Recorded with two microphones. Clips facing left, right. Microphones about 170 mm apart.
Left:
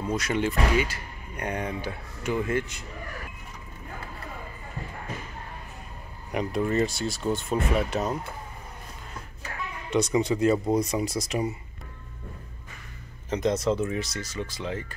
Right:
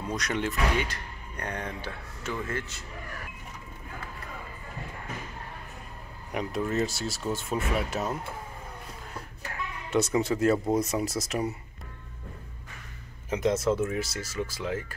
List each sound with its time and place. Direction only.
0.0 s speech: 5° left (ahead or behind)
6.3 s speech: centre (ahead or behind)
9.8 s speech: 5° right (ahead or behind)
13.3 s speech: 5° right (ahead or behind)